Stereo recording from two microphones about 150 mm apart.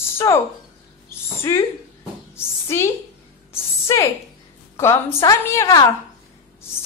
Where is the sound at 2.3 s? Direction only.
15° left (ahead or behind).